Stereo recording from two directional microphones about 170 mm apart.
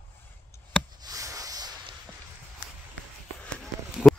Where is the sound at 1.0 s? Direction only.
20° right (ahead or behind).